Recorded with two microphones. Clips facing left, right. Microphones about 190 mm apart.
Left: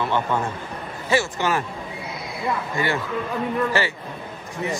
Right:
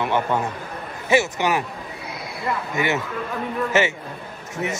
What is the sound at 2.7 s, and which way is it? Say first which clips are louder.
A man's voice: right 1 dB; 20° right (ahead or behind).